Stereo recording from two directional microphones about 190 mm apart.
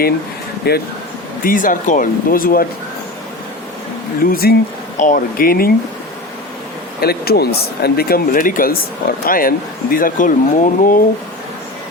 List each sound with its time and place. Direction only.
0.7 s speech: 60° left (ahead or behind)
1.5 s speech: 45° left (ahead or behind)
4.3 s speech: 50° left (ahead or behind)
7.0 s speech: 55° left (ahead or behind)